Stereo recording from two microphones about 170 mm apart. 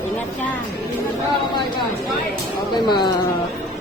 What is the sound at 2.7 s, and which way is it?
Mantra, 25° left (ahead or behind).